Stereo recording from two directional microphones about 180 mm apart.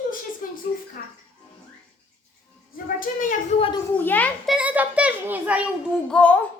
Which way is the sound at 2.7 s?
50° left (ahead or behind).